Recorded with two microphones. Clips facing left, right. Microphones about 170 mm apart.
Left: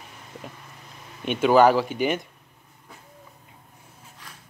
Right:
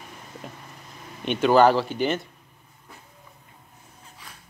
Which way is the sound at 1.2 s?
5° left (ahead or behind).